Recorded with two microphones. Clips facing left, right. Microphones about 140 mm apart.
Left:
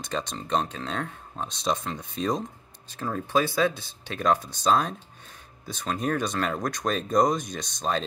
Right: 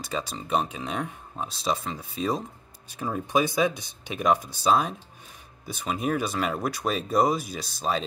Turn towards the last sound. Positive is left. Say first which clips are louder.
# even
turn(degrees=-5)  # may be behind; listen again after turning